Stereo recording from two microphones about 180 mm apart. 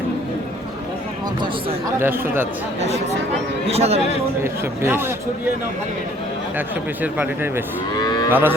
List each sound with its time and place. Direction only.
2.0 s speech: 10° right (ahead or behind)
3.7 s speech: 35° right (ahead or behind)
4.4 s speech: 15° right (ahead or behind)
7.0 s speech: 10° right (ahead or behind)
7.9 s moo: 25° left (ahead or behind)
8.3 s speech: 10° right (ahead or behind)